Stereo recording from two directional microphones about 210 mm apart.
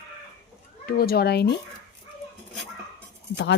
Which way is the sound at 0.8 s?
45° left (ahead or behind).